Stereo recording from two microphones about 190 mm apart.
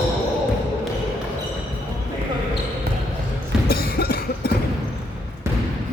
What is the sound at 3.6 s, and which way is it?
Cough, 55° left (ahead or behind).